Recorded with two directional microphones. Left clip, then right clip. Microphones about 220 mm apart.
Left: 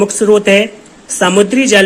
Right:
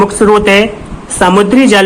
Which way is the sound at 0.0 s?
15° left (ahead or behind).